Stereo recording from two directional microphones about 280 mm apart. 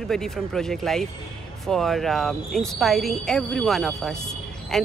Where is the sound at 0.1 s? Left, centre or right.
Centre.